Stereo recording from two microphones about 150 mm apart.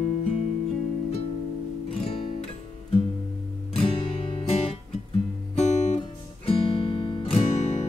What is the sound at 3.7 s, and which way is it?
Music, 40° left (ahead or behind).